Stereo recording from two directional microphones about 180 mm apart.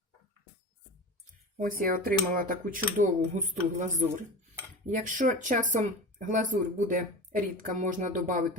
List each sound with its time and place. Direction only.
1.8 s speech: 50° right (ahead or behind)